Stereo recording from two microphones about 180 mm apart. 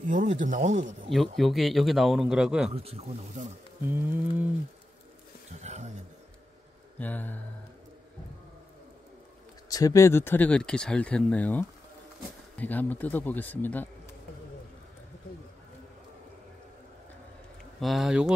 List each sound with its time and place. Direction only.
0.1 s speech: 45° right (ahead or behind)
1.1 s speech: centre (ahead or behind)
2.7 s speech: 35° right (ahead or behind)
3.9 s rain on surface: 10° right (ahead or behind)
5.6 s a sound: 40° right (ahead or behind)
7.0 s speech: 10° left (ahead or behind)
9.7 s speech: 20° left (ahead or behind)
17.7 s speech: centre (ahead or behind)